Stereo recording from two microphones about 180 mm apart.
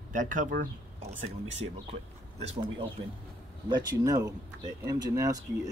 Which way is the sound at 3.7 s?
20° right (ahead or behind).